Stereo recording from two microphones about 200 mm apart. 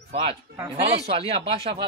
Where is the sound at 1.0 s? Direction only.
30° right (ahead or behind).